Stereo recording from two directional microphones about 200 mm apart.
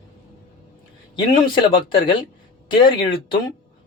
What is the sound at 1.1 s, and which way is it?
Speech, 20° left (ahead or behind).